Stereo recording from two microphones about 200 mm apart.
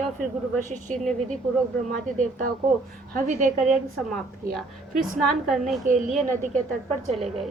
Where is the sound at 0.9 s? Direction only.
Centre (ahead or behind).